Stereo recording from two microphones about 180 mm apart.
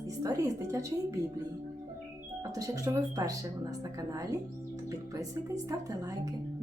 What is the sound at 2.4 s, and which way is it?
A woman's voice, 20° right (ahead or behind).